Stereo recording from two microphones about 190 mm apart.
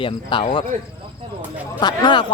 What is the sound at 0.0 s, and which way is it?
Speech, 25° left (ahead or behind).